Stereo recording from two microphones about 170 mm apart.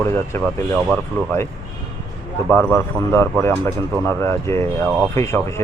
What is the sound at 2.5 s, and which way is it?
Speech, 10° left (ahead or behind).